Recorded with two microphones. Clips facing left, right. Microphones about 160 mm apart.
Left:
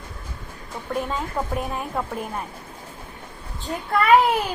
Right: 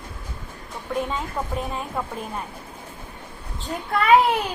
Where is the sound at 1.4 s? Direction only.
10° left (ahead or behind).